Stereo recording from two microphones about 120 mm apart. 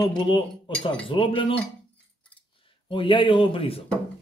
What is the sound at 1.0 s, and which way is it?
Speech, 45° left (ahead or behind).